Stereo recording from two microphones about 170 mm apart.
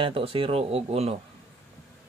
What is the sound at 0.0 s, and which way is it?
Speech, 35° right (ahead or behind).